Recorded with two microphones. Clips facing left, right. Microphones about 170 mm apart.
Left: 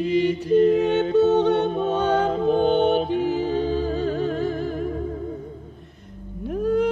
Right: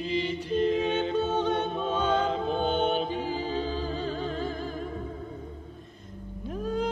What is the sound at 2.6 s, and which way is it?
Music, 65° left (ahead or behind).